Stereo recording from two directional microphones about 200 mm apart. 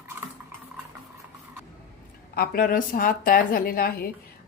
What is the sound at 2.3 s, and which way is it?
A woman's voice, 50° left (ahead or behind).